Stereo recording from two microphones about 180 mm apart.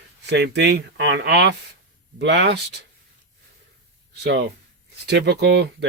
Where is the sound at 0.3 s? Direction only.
70° right (ahead or behind).